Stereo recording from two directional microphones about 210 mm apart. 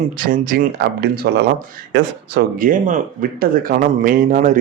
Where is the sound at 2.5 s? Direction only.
40° right (ahead or behind).